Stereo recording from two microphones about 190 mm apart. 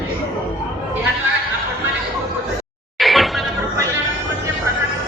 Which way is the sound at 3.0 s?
Centre (ahead or behind).